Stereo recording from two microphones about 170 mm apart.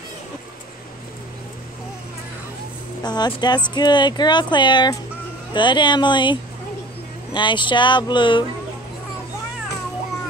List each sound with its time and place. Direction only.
3.0 s speech: 25° left (ahead or behind)
7.3 s speech: 30° left (ahead or behind)